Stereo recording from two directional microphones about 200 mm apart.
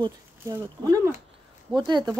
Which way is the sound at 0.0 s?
15° right (ahead or behind).